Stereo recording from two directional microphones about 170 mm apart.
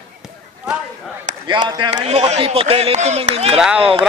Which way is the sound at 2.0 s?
40° right (ahead or behind).